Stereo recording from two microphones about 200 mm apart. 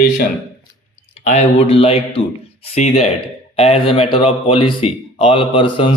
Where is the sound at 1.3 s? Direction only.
35° left (ahead or behind).